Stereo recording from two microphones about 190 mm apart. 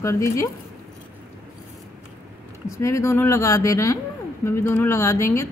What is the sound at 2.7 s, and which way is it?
A woman's voice, 15° left (ahead or behind).